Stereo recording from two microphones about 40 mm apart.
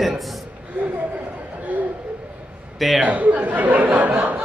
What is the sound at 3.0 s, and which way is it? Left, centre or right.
Speech, right.